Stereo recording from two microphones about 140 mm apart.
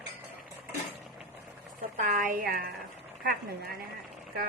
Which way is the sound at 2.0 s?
70° right (ahead or behind).